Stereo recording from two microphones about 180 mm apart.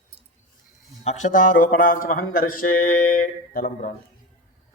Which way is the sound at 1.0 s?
45° left (ahead or behind).